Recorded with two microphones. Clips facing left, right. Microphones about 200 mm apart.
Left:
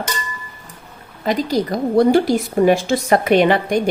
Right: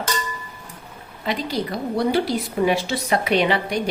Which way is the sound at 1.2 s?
45° left (ahead or behind).